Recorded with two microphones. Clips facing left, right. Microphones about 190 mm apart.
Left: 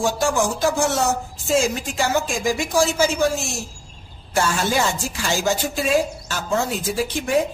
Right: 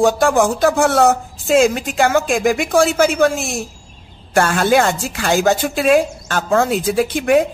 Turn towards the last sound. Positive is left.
turn(degrees=-65)  # may be behind; listen again after turning